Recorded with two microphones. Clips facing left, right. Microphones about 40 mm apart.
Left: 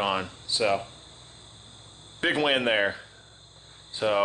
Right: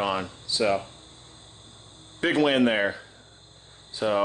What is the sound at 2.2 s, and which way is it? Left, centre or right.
Speech, centre.